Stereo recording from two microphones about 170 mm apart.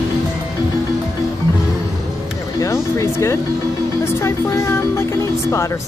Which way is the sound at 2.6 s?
20° left (ahead or behind).